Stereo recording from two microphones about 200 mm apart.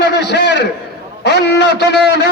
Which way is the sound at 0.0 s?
60° left (ahead or behind).